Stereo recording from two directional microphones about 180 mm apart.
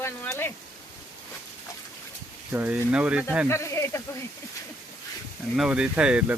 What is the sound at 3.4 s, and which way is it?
Speech, 15° left (ahead or behind).